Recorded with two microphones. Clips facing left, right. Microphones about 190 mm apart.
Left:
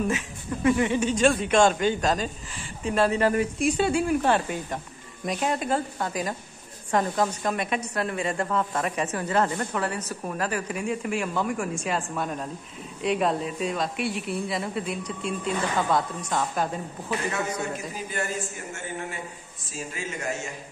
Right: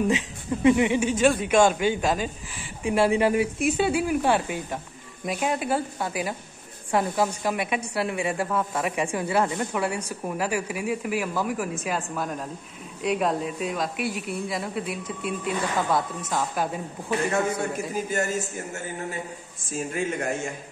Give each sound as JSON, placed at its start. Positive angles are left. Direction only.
{"t": 0.7, "sound": "speech", "side_deg": -15}
{"t": 17.7, "sound": "a man's voice", "side_deg": -45}
{"t": 19.7, "sound": "a man's voice", "side_deg": -55}